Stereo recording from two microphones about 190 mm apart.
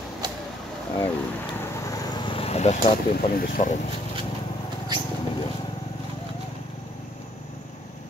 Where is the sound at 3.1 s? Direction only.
50° left (ahead or behind).